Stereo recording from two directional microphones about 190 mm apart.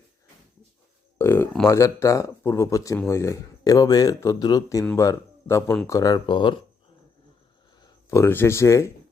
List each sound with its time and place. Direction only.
1.2 s speech: 10° left (ahead or behind)
7.8 s speech: 15° left (ahead or behind)